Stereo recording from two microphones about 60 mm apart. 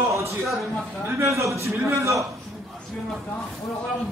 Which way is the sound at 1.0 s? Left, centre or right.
Right.